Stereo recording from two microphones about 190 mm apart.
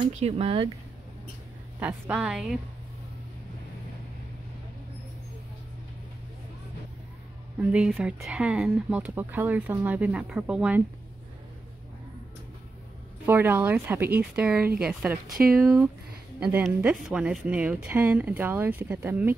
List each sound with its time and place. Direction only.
0.2 s speech: 30° right (ahead or behind)
1.8 s a woman's voice: 5° right (ahead or behind)
7.7 s speech: 5° right (ahead or behind)
13.2 s a woman's voice: 10° right (ahead or behind)